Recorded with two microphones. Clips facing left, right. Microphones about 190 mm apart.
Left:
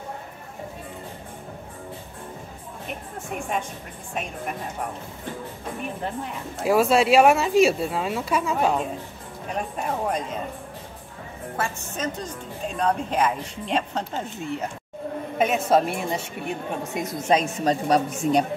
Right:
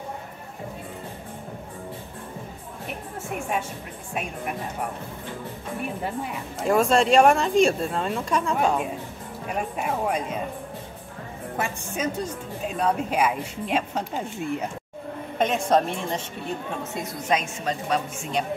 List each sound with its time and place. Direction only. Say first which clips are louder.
3.3 s a woman's voice: even; 5° right (ahead or behind)
6.6 s a woman's voice: left 1 dB; 5° left (ahead or behind)
9.5 s a woman's voice: even; 5° right (ahead or behind)
11.5 s a woman's voice: right 1 dB; 15° right (ahead or behind)
15.3 s a woman's voice: left 1 dB; 5° left (ahead or behind)
17.3 s speech: left 5 dB; 35° left (ahead or behind)